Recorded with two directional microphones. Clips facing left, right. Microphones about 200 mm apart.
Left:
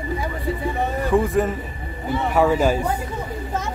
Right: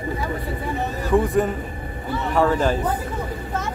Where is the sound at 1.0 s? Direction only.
Centre (ahead or behind).